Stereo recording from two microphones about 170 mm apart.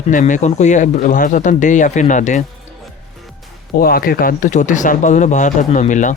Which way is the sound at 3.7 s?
60° left (ahead or behind).